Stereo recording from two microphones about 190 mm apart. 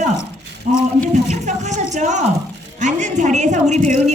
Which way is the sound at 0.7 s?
45° right (ahead or behind).